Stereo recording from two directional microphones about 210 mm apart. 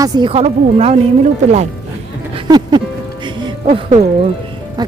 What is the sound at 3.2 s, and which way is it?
Music, 25° right (ahead or behind).